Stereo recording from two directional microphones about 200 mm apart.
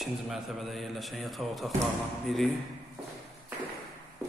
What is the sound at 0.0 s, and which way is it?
A man's voice, centre (ahead or behind).